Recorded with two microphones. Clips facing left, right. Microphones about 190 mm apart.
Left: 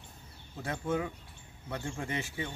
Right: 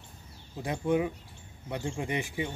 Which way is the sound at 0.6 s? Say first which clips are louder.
Right 5 dB; 15° right (ahead or behind).